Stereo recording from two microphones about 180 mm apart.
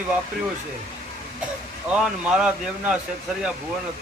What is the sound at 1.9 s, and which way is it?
Speech, 5° right (ahead or behind).